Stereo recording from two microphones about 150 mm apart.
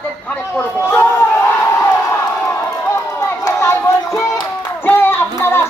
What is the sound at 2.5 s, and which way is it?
Run, 15° left (ahead or behind).